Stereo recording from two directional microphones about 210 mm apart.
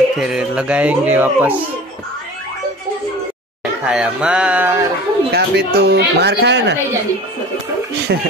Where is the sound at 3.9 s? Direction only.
5° right (ahead or behind).